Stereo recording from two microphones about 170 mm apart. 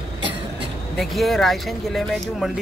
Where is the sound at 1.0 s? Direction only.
Centre (ahead or behind).